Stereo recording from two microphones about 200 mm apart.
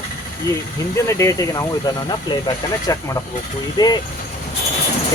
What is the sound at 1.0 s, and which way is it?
Speech, 15° left (ahead or behind).